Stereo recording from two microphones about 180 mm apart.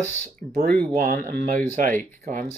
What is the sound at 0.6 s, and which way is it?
Speech, 55° right (ahead or behind).